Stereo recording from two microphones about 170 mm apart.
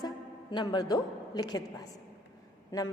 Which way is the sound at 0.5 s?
25° left (ahead or behind).